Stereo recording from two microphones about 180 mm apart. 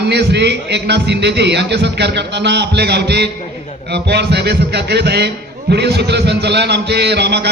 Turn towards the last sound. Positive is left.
turn(degrees=-70)  # may be behind; listen again after turning